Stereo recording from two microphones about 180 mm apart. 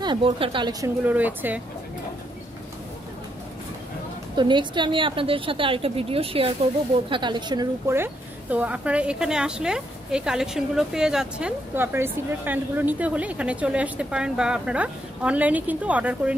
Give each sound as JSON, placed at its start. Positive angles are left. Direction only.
{"t": 0.0, "sound": "a woman's voice", "side_deg": -30}
{"t": 1.0, "sound": "speech", "side_deg": -10}
{"t": 4.4, "sound": "a woman's voice", "side_deg": -25}
{"t": 7.9, "sound": "speech", "side_deg": -10}